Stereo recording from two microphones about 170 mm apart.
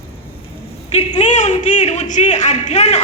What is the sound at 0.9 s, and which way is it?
A woman's voice, 40° left (ahead or behind).